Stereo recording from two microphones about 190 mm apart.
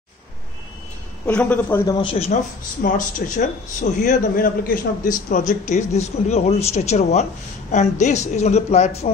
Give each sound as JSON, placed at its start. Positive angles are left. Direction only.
{"t": 1.2, "sound": "speech", "side_deg": 5}
{"t": 2.0, "sound": "a man's voice", "side_deg": 30}
{"t": 2.8, "sound": "a man's voice", "side_deg": 45}